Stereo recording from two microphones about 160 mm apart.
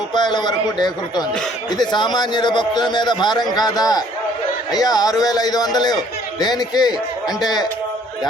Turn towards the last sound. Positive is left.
turn(degrees=25)  # may be behind; listen again after turning